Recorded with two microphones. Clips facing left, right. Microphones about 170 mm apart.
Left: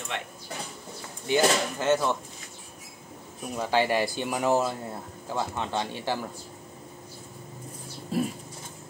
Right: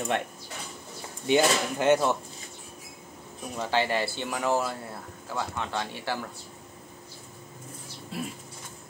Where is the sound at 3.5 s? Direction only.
10° left (ahead or behind).